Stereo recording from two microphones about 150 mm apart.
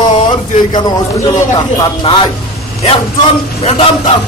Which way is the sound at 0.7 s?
25° left (ahead or behind).